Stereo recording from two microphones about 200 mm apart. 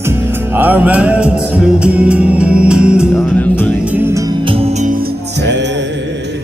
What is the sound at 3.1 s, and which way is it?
Music, 10° left (ahead or behind).